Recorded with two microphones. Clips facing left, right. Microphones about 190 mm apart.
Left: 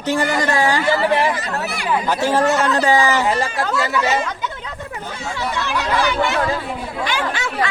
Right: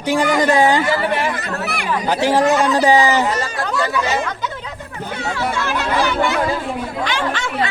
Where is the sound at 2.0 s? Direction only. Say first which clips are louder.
Right 3 dB; 15° right (ahead or behind).